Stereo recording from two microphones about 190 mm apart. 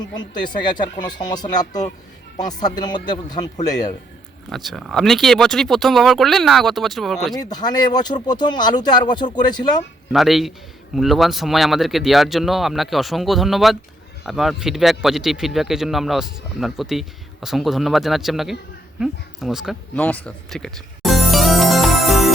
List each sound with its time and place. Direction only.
1.0 s speech: 20° left (ahead or behind)
4.4 s speech: centre (ahead or behind)
7.3 s speech: 20° left (ahead or behind)
10.1 s speech: centre (ahead or behind)
20.0 s music: 5° left (ahead or behind)